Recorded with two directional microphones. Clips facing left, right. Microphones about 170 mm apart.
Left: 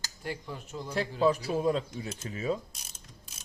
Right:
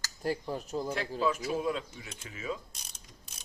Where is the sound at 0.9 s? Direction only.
35° left (ahead or behind).